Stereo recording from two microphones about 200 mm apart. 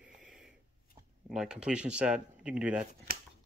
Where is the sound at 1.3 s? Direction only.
5° right (ahead or behind).